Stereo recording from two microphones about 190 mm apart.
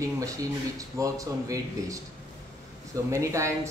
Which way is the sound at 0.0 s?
15° right (ahead or behind).